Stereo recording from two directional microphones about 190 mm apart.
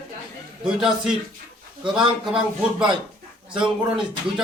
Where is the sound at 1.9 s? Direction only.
5° right (ahead or behind).